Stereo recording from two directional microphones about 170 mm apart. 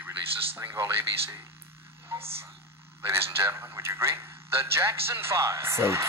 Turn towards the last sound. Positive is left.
turn(degrees=-15)  # may be behind; listen again after turning